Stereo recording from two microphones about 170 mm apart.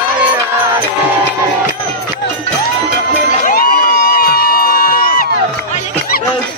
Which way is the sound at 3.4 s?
55° left (ahead or behind).